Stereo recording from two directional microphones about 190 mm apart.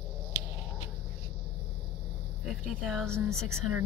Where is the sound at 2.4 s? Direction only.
Centre (ahead or behind).